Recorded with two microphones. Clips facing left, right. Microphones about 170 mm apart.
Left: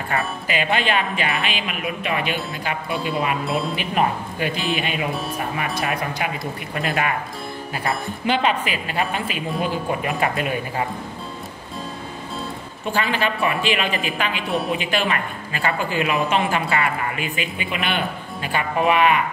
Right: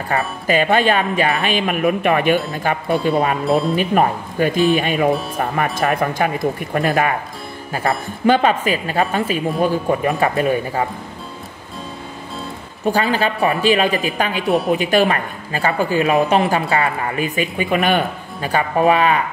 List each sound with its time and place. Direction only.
0.1 s speech: 45° right (ahead or behind)
8.3 s speech: 45° right (ahead or behind)
12.8 s speech: 40° right (ahead or behind)